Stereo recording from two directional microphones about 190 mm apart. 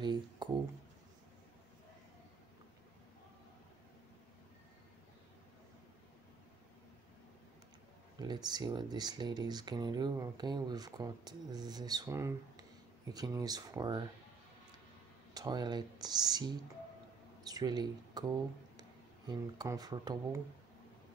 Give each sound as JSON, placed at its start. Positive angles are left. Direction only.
{"t": 0.0, "sound": "a sound", "side_deg": -25}
{"t": 8.2, "sound": "speech", "side_deg": -20}
{"t": 15.3, "sound": "speech", "side_deg": -20}